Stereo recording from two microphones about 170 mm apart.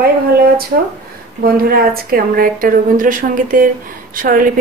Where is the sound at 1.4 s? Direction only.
60° right (ahead or behind).